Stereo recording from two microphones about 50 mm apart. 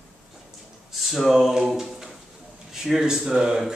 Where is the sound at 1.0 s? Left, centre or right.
Centre.